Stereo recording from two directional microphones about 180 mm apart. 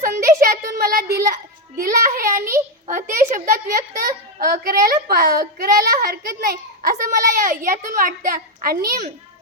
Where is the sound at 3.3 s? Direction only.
50° right (ahead or behind).